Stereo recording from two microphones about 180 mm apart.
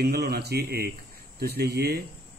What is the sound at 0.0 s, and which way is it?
Speech, 60° right (ahead or behind).